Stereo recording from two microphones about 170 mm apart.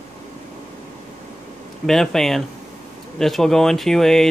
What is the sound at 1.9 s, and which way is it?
Speech, centre (ahead or behind).